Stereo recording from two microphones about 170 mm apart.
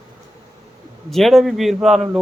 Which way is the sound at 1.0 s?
Centre (ahead or behind).